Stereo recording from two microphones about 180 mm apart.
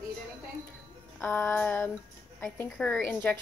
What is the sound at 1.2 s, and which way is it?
A woman's voice, 10° left (ahead or behind).